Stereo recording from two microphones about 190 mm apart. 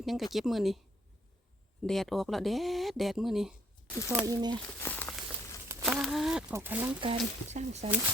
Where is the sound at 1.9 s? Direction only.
Centre (ahead or behind).